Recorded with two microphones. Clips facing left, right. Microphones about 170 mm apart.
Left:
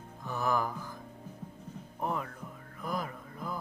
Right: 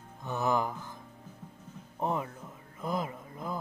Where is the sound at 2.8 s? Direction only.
20° right (ahead or behind).